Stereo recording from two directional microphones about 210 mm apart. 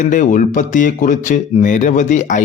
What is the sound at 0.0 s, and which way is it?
Speech, 35° left (ahead or behind).